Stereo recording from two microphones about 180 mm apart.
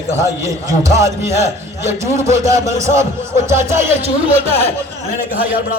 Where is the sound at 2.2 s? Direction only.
15° right (ahead or behind).